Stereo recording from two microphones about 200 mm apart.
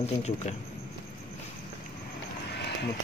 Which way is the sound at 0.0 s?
35° left (ahead or behind).